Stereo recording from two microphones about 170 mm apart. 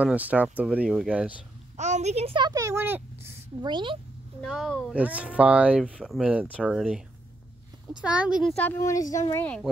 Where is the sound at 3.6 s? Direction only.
25° right (ahead or behind).